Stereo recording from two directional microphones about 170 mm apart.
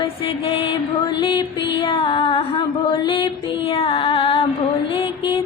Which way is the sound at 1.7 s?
30° left (ahead or behind).